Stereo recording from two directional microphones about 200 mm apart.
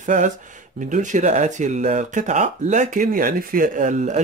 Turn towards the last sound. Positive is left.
turn(degrees=-40)  # may be behind; listen again after turning